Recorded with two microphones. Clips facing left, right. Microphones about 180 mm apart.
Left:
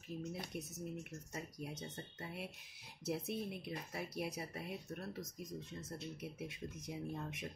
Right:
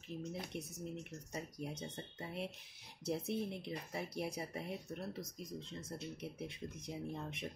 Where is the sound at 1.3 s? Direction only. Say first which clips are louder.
Right 3 dB; 20° right (ahead or behind).